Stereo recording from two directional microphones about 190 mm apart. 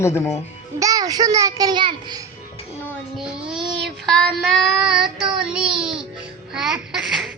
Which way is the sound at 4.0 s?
Centre (ahead or behind).